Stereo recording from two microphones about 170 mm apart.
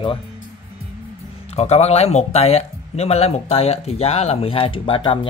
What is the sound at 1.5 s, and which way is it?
Speech, 40° left (ahead or behind).